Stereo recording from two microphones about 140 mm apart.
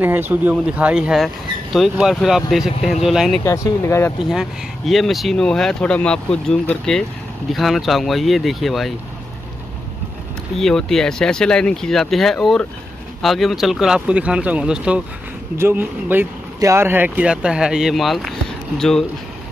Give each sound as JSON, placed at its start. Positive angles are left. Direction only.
{"t": 0.0, "sound": "speech", "side_deg": -15}
{"t": 3.4, "sound": "speech", "side_deg": 20}
{"t": 4.3, "sound": "speech", "side_deg": 0}
{"t": 10.6, "sound": "speech", "side_deg": 5}